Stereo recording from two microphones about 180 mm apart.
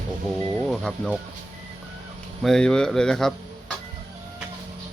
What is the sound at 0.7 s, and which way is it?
Speech, centre (ahead or behind).